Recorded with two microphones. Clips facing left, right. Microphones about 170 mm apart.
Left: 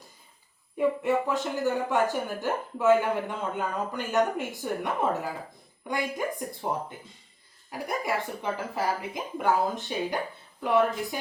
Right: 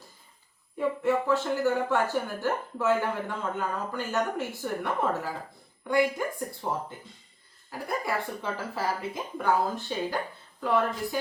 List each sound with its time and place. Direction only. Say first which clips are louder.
0.8 s speech: left 1 dB; 15° left (ahead or behind)
7.7 s speech: left 1 dB; 20° left (ahead or behind)